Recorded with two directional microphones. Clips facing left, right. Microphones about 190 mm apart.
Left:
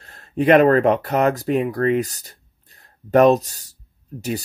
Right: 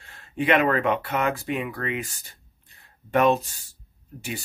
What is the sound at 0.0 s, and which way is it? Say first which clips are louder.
Speech: left 7 dB; 40° left (ahead or behind).